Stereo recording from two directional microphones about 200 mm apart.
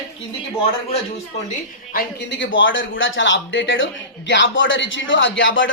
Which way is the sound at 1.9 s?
45° left (ahead or behind).